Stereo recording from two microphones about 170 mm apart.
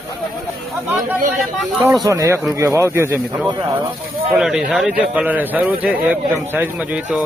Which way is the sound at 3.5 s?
25° right (ahead or behind).